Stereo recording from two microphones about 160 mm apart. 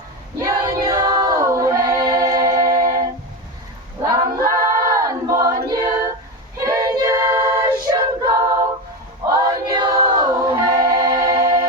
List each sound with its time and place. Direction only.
0.4 s choir: 20° right (ahead or behind)
4.0 s choir: 20° right (ahead or behind)
6.6 s a capella: 20° right (ahead or behind)
9.2 s music: 25° right (ahead or behind)